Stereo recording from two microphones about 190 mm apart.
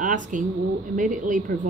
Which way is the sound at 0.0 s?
45° right (ahead or behind).